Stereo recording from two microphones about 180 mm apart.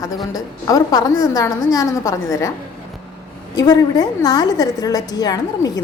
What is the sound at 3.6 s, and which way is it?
A woman's voice, 20° left (ahead or behind).